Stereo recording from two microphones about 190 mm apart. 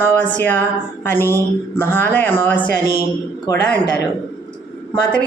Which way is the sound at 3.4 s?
20° left (ahead or behind).